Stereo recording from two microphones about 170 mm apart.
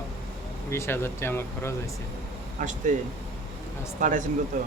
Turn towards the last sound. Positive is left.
turn(degrees=-50)  # may be behind; listen again after turning